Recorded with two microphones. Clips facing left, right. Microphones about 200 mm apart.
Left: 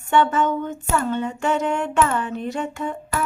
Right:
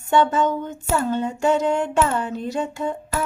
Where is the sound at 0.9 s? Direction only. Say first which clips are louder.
Right 1 dB; 35° right (ahead or behind).